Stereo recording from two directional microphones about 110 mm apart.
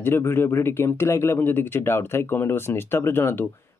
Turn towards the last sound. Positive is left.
turn(degrees=20)  # may be behind; listen again after turning